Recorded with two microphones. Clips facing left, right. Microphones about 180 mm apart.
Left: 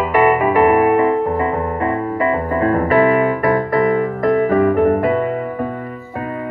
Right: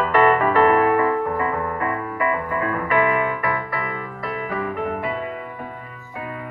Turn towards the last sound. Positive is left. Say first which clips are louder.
# left 11 dB
turn(degrees=50)  # may be behind; listen again after turning